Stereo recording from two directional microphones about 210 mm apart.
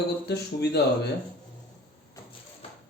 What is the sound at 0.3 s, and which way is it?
Speech, 50° left (ahead or behind).